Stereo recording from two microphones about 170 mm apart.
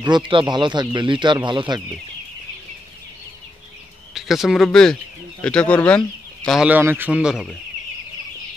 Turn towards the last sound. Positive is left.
turn(degrees=-5)  # may be behind; listen again after turning